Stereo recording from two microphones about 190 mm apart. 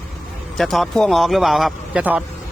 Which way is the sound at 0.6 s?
Centre (ahead or behind).